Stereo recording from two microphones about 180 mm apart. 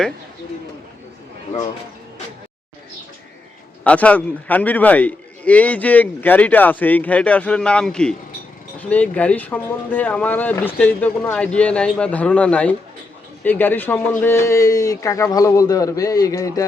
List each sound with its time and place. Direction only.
3.8 s a man's voice: 5° left (ahead or behind)